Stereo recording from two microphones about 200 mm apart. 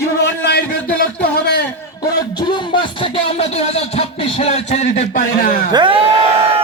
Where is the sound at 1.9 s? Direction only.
20° left (ahead or behind); by 5.6 s 45° left (ahead or behind).